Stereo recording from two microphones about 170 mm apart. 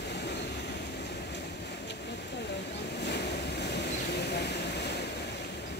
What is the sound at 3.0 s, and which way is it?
Vehicle, 80° left.